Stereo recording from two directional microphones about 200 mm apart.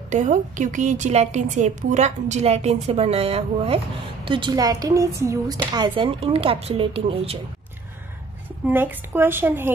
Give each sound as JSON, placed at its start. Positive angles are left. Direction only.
{"t": 0.1, "sound": "a woman's voice", "side_deg": -40}
{"t": 8.6, "sound": "a woman's voice", "side_deg": -10}